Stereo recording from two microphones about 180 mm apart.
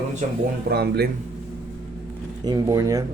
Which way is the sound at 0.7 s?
65° right (ahead or behind).